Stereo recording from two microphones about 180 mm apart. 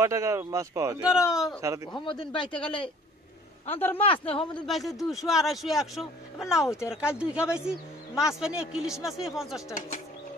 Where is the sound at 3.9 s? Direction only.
30° left (ahead or behind).